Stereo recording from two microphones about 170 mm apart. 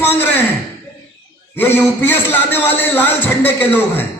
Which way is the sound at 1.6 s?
10° left (ahead or behind).